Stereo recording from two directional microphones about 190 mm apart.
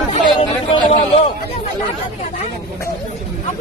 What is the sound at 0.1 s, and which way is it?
Chatter, 30° left (ahead or behind).